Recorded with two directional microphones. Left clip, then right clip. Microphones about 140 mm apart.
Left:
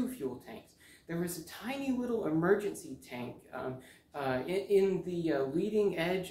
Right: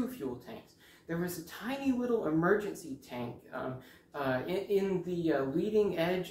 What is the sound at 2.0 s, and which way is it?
Speech, 25° left (ahead or behind).